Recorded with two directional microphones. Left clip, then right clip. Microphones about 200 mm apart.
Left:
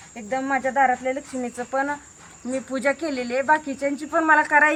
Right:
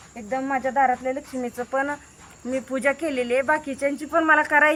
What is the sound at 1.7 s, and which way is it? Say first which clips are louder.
Speech: left 1 dB; 10° right (ahead or behind).